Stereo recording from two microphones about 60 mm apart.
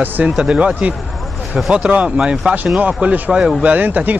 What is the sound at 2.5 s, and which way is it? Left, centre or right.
Speech, right.